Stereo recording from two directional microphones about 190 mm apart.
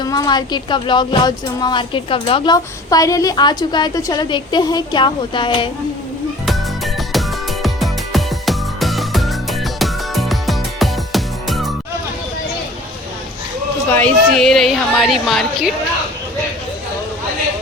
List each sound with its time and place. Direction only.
0.0 s speech: 20° left (ahead or behind)
6.4 s music: centre (ahead or behind)
13.9 s a woman's voice: 5° left (ahead or behind)